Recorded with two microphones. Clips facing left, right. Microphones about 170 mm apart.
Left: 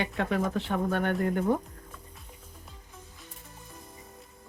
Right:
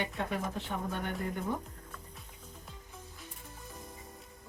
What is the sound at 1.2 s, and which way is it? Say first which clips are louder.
Speech: left 9 dB; 60° left (ahead or behind).